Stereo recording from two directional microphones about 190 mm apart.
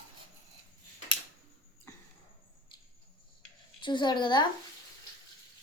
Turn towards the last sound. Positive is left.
turn(degrees=25)  # may be behind; listen again after turning